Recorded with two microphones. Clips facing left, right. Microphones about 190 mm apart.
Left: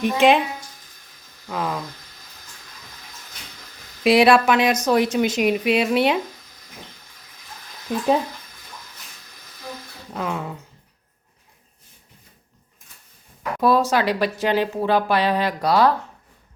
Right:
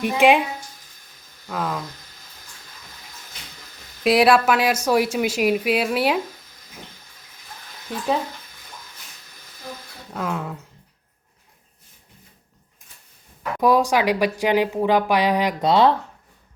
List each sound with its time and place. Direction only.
0.0 s speech: 10° right (ahead or behind)
1.5 s speech: centre (ahead or behind)
4.0 s speech: centre (ahead or behind)
7.9 s speech: 20° left (ahead or behind)
10.1 s speech: centre (ahead or behind)
13.6 s speech: 15° right (ahead or behind)